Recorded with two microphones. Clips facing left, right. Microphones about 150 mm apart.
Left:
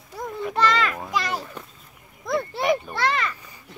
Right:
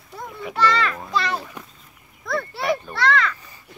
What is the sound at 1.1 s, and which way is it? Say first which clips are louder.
Children playing: right 2 dB; 15° left (ahead or behind).